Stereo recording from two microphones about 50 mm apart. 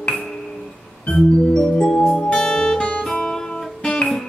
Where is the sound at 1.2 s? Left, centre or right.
Centre.